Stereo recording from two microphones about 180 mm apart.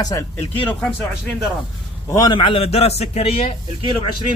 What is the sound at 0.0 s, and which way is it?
Speech, 20° left (ahead or behind).